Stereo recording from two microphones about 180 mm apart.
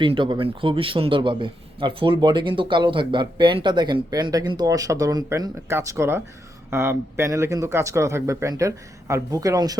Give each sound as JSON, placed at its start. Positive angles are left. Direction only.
{"t": 0.0, "sound": "a man's voice", "side_deg": -25}